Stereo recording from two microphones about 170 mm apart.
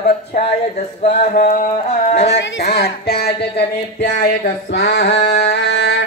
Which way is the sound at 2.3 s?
75° left (ahead or behind).